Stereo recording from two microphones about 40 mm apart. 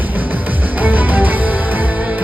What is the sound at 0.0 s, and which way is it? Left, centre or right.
Music, right.